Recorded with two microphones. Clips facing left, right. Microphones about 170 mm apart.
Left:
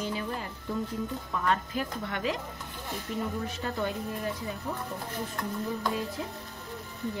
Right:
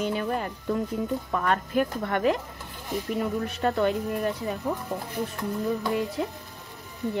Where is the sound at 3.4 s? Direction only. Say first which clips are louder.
Right 7 dB; 65° right (ahead or behind).